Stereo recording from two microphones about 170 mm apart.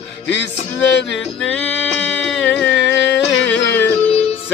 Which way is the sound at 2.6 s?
90° left.